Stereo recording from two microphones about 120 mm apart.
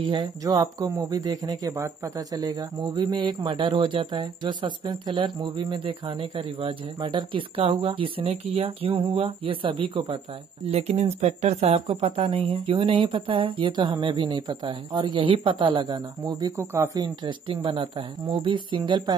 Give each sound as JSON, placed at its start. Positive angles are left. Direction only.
{"t": 0.0, "sound": "speech", "side_deg": -40}
{"t": 10.7, "sound": "speech", "side_deg": -60}